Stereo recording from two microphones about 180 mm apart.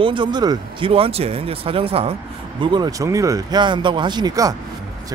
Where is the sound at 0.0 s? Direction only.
25° right (ahead or behind).